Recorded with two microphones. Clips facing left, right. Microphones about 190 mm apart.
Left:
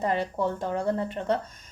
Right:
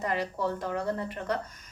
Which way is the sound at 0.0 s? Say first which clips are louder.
Left 3 dB; 30° left (ahead or behind).